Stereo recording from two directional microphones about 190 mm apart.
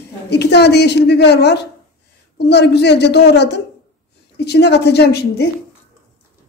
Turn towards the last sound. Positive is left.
turn(degrees=60)  # may be behind; listen again after turning